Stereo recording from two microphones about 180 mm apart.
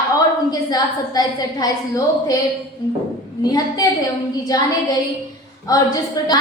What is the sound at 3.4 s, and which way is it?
A woman's voice, 20° left (ahead or behind).